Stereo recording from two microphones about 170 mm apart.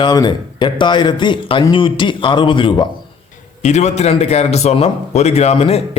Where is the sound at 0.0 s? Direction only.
25° left (ahead or behind).